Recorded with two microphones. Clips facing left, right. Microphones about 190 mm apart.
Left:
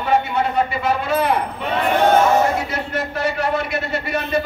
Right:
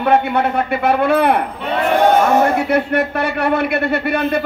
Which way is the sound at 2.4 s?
60° right (ahead or behind).